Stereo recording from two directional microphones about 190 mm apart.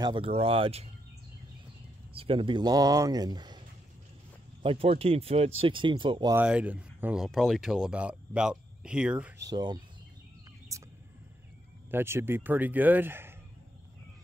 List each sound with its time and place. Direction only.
0.0 s speech: 25° right (ahead or behind)
2.1 s speech: 30° right (ahead or behind)
4.6 s speech: 30° right (ahead or behind)
6.3 s speech: 5° right (ahead or behind)
9.5 s speech: 20° right (ahead or behind)
11.9 s speech: 15° right (ahead or behind)